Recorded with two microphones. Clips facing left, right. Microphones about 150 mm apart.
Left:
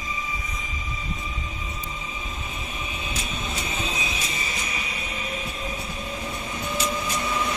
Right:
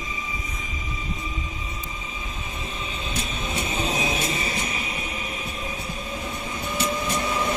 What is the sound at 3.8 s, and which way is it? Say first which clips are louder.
Music: right 5 dB; 40° right (ahead or behind).